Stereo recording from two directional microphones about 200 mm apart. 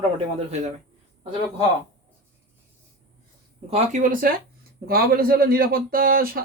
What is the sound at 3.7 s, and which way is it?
Speech, 40° right (ahead or behind).